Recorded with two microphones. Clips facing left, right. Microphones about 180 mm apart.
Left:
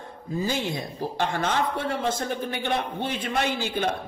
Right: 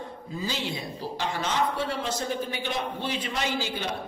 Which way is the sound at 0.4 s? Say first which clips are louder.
Left 4 dB; 50° left (ahead or behind).